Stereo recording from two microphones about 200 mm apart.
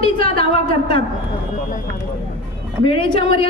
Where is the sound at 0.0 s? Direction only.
25° left (ahead or behind).